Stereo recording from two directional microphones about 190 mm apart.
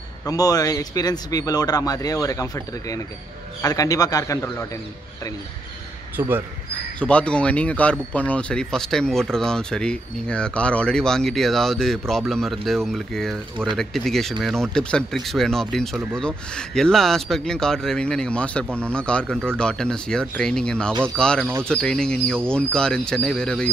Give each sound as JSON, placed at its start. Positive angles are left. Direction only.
{"t": 0.2, "sound": "a man's voice", "side_deg": 20}
{"t": 6.1, "sound": "a man's voice", "side_deg": -10}
{"t": 7.0, "sound": "speech", "side_deg": 5}